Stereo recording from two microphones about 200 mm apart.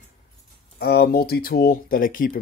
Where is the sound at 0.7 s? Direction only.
50° left (ahead or behind).